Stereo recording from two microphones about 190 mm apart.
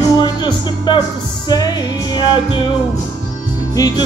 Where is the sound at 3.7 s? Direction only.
20° left (ahead or behind).